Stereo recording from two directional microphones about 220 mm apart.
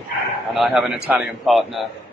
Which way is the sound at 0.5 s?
Centre (ahead or behind).